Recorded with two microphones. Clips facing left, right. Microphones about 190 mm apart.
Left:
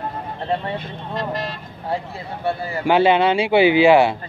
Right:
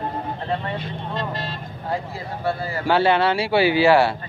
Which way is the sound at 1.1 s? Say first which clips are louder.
Left 4 dB; 25° right (ahead or behind).